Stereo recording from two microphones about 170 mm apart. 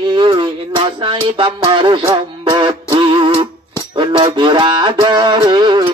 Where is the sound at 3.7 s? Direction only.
30° right (ahead or behind).